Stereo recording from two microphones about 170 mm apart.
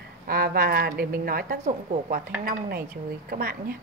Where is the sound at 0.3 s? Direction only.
60° right (ahead or behind).